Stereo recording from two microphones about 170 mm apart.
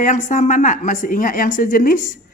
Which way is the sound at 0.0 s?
45° left (ahead or behind).